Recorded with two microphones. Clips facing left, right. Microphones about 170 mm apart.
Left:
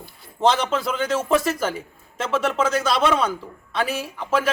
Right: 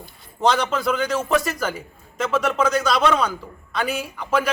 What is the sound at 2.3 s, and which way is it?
A man's voice, centre (ahead or behind).